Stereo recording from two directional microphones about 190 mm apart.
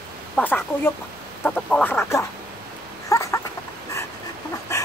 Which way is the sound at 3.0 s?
15° left (ahead or behind).